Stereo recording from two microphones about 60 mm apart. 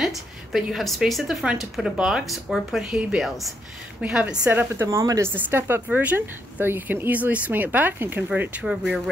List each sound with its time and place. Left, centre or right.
0.0 s a woman's voice: centre
2.0 s speech: centre
2.2 s speech: centre
2.8 s speech: centre
3.2 s speech: centre
4.0 s speech: right
4.5 s a woman's voice: right
4.8 s speech: right
5.3 s a woman's voice: right
5.9 s speech: right
6.1 s a woman's voice: right
7.1 s speech: right
8.6 s speech: centre